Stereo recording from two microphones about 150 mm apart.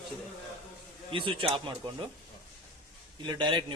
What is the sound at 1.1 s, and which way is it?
Speech, 35° right (ahead or behind).